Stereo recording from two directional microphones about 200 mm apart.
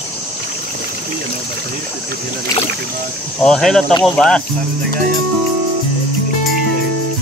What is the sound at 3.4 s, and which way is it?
Speech, 5° left (ahead or behind).